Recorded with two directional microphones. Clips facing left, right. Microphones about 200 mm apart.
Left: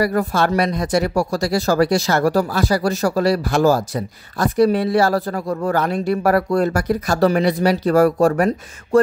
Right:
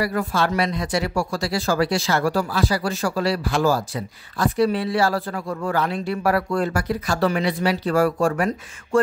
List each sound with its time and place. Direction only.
0.0 s speech: 40° left (ahead or behind)